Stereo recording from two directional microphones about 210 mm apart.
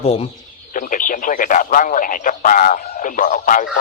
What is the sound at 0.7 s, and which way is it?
Speech, 40° left (ahead or behind).